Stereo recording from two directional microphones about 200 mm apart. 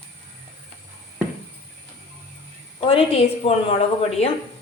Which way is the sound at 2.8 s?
30° left (ahead or behind).